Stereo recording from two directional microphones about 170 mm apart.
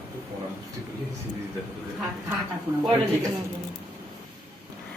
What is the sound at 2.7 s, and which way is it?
Speech, 15° right (ahead or behind).